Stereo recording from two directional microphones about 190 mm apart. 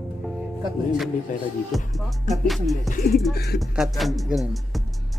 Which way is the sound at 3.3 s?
55° left (ahead or behind).